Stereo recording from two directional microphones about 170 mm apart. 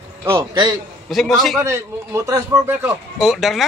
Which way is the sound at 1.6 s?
15° right (ahead or behind).